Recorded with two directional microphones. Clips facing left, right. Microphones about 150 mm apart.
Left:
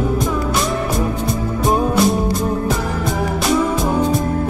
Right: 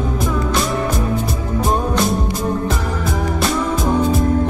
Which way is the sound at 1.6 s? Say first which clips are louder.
Left 2 dB; centre (ahead or behind).